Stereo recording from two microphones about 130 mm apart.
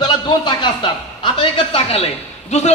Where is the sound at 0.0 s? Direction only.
35° left (ahead or behind).